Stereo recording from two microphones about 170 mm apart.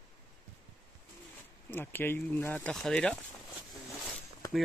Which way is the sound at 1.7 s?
10° left (ahead or behind).